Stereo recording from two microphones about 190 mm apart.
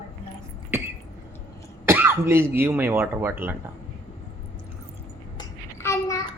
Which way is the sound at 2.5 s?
15° right (ahead or behind).